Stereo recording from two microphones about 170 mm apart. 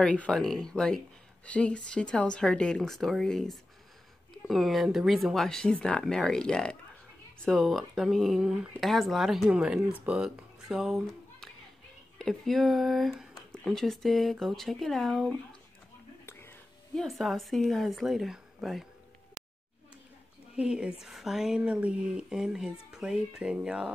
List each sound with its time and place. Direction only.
0.0 s speech: 5° left (ahead or behind)
16.3 s speech: 15° left (ahead or behind)
20.5 s speech: 5° right (ahead or behind)